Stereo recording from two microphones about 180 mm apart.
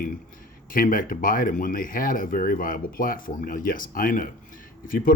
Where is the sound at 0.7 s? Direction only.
50° left (ahead or behind).